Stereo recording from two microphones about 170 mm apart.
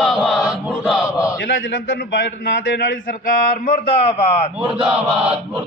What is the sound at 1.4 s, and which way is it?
A man's voice, 90° left.